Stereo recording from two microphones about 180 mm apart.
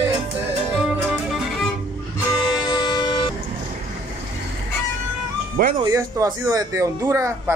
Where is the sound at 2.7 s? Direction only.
25° left (ahead or behind).